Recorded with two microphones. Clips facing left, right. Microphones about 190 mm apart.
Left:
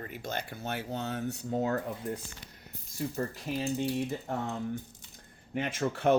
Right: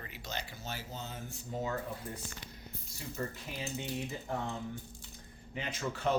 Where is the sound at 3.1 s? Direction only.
40° left (ahead or behind).